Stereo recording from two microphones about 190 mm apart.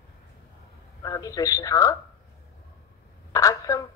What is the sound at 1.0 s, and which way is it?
Music, 20° left (ahead or behind).